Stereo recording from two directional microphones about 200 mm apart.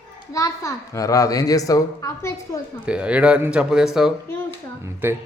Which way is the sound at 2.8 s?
5° right (ahead or behind).